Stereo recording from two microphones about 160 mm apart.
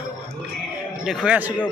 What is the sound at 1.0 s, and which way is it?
Speech, 5° right (ahead or behind).